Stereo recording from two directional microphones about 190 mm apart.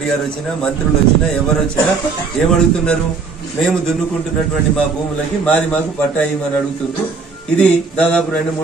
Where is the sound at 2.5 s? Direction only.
5° left (ahead or behind).